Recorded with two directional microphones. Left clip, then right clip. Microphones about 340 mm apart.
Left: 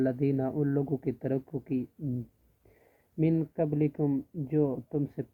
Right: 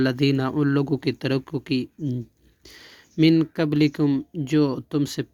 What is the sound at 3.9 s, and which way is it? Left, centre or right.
Speech, right.